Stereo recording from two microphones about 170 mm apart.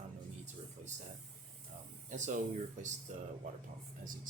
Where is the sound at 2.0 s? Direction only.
45° right (ahead or behind).